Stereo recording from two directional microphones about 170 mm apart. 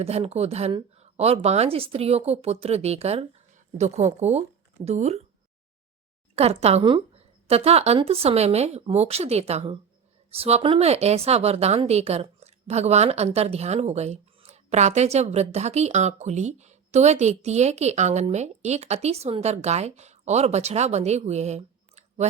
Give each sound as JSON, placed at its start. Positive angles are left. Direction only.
{"t": 0.0, "sound": "a woman's voice", "side_deg": -35}
{"t": 6.3, "sound": "a woman's voice", "side_deg": -40}